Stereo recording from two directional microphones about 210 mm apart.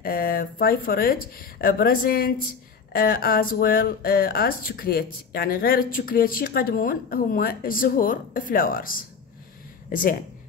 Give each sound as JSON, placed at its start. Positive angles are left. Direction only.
{"t": 0.0, "sound": "speech", "side_deg": 45}